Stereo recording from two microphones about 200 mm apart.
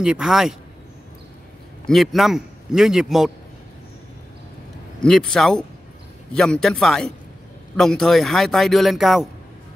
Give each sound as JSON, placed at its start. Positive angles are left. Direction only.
{"t": 0.0, "sound": "a man's voice", "side_deg": -5}
{"t": 1.9, "sound": "a man's voice", "side_deg": 0}
{"t": 5.0, "sound": "a man's voice", "side_deg": 0}